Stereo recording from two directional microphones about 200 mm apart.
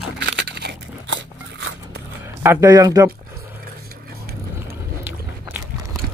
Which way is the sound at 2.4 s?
10° right (ahead or behind).